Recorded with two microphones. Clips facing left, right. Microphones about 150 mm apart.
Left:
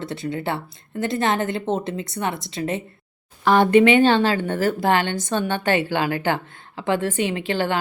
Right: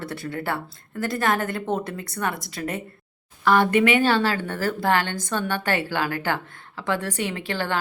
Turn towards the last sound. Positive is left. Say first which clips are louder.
# left 4 dB
turn(degrees=20)  # may be behind; listen again after turning